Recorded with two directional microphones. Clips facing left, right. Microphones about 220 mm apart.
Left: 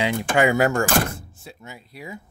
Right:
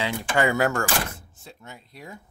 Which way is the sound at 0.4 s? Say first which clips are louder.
Left 3 dB; 15° left (ahead or behind).